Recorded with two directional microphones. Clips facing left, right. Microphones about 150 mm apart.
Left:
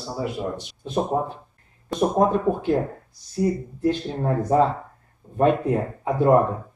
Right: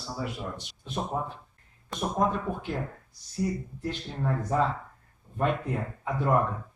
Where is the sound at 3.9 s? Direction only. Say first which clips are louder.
Left 8 dB; 40° left (ahead or behind).